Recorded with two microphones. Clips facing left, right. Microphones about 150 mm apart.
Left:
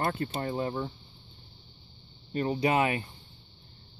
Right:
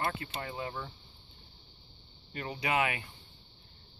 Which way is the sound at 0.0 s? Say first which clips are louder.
Left 5 dB; 45° left (ahead or behind).